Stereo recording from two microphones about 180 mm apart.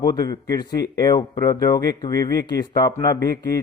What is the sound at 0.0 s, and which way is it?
A man's voice, 20° left (ahead or behind).